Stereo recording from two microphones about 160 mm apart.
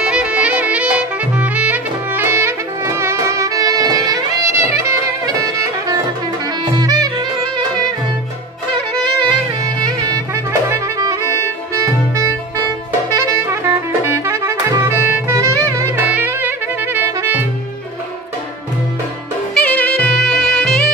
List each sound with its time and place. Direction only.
0.0 s music: 5° right (ahead or behind); by 7.1 s 25° right (ahead or behind)
10.7 s music: 20° right (ahead or behind)
12.2 s saxophone: 20° right (ahead or behind)
15.3 s music: 15° right (ahead or behind)
19.5 s music: 10° left (ahead or behind)